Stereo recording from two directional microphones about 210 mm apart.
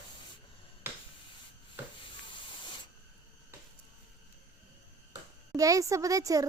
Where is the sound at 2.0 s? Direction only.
25° left (ahead or behind).